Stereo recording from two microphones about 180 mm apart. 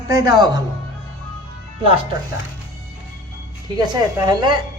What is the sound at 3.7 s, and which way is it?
Speech, 25° right (ahead or behind).